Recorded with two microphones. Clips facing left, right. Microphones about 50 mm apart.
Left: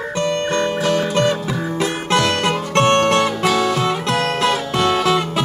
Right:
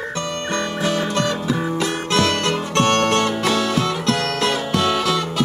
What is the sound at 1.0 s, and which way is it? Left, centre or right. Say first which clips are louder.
Music: left 3 dB; left.